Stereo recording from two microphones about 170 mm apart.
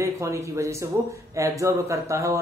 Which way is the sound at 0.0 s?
15° right (ahead or behind).